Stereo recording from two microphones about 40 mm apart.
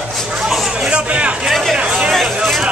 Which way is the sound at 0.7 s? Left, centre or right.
Right.